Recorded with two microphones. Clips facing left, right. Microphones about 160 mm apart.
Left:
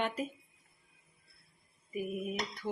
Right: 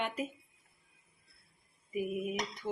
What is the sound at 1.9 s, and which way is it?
Cutlery, 15° right (ahead or behind).